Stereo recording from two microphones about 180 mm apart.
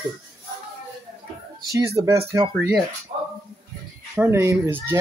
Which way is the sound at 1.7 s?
15° right (ahead or behind).